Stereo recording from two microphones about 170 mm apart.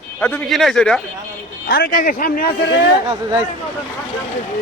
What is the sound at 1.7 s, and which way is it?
Speech, 60° left (ahead or behind).